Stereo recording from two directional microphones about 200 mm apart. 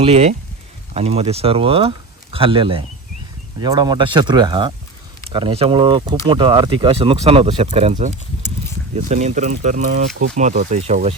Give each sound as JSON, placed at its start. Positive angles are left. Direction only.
{"t": 0.0, "sound": "speech", "side_deg": -30}